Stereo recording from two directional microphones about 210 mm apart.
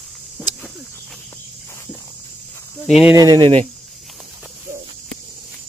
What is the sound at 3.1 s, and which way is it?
Speech, 20° right (ahead or behind).